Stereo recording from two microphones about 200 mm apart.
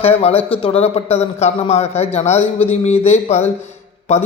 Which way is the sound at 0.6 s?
30° left (ahead or behind).